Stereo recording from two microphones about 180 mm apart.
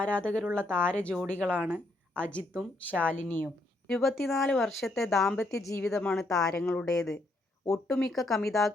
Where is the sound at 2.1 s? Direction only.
10° left (ahead or behind).